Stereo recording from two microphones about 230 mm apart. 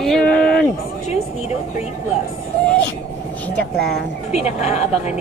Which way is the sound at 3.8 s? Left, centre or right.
Left.